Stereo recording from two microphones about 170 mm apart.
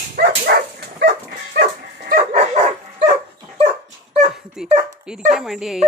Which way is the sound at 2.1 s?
40° right (ahead or behind).